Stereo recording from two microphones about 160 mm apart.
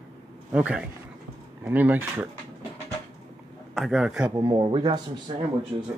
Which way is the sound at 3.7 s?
Centre (ahead or behind).